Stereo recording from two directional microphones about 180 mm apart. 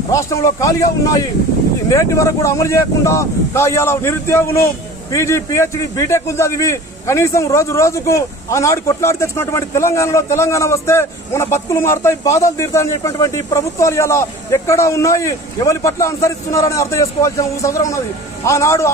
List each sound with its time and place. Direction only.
0.1 s a man's voice: 15° left (ahead or behind)